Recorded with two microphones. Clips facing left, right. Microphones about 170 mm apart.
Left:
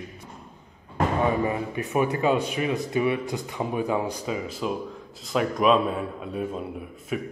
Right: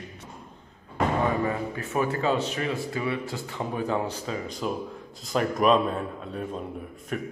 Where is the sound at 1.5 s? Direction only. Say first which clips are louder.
Left 2 dB; 15° left (ahead or behind).